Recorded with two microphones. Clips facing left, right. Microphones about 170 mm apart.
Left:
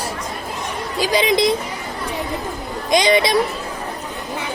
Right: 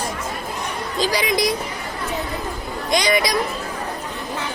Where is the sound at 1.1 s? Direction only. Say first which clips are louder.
Left 6 dB; 25° left (ahead or behind).